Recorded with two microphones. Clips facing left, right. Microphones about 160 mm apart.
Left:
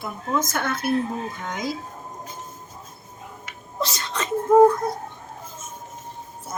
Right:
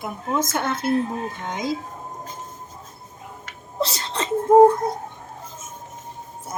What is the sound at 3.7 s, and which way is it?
Whimper, 30° right (ahead or behind).